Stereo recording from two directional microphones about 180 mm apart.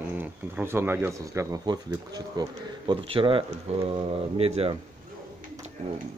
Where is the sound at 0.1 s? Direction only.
10° right (ahead or behind); by 4.7 s 35° right (ahead or behind).